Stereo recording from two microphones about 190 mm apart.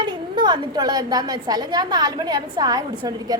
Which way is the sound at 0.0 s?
25° right (ahead or behind).